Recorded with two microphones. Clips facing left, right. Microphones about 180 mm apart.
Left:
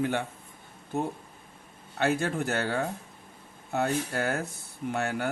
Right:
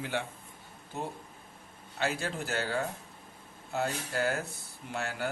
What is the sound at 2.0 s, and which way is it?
Speech, 60° left (ahead or behind).